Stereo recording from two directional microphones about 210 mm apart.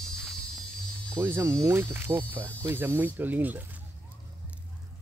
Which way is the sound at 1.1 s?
10° right (ahead or behind).